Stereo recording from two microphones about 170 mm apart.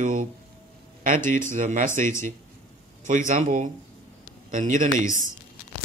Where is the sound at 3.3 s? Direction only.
45° right (ahead or behind).